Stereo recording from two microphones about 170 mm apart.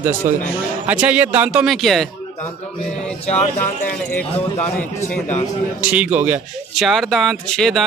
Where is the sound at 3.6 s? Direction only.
10° left (ahead or behind).